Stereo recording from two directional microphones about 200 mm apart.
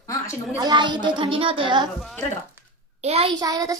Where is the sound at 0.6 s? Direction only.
20° right (ahead or behind).